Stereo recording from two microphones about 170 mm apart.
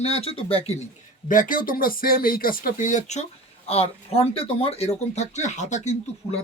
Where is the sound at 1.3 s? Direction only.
50° left (ahead or behind).